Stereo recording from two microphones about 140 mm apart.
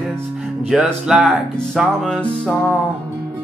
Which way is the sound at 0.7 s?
5° right (ahead or behind).